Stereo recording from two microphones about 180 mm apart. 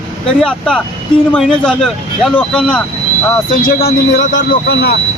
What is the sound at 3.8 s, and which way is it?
Speech, 35° left (ahead or behind).